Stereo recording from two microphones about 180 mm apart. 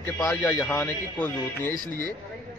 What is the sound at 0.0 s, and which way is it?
Speech, 10° left (ahead or behind).